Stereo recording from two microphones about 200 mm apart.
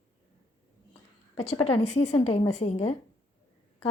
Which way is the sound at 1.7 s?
30° left (ahead or behind).